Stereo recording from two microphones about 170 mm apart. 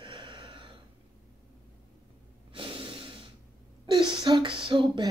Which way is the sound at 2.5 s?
30° right (ahead or behind).